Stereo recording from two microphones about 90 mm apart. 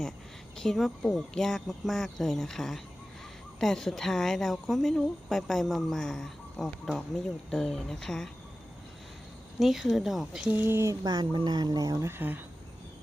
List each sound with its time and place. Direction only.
0.5 s a woman's voice: 5° left (ahead or behind)
9.6 s a woman's voice: centre (ahead or behind)
10.5 s speech: 25° right (ahead or behind)
11.0 s speech: 45° right (ahead or behind)
12.0 s speech: 20° right (ahead or behind)